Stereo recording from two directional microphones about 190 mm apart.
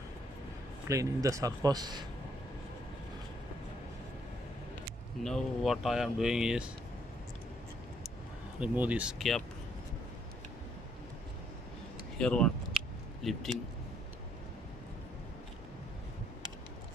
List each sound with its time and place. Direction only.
0.8 s a man's voice: 15° right (ahead or behind)
5.2 s speech: centre (ahead or behind)
8.5 s speech: 5° right (ahead or behind)
12.2 s speech: 5° left (ahead or behind)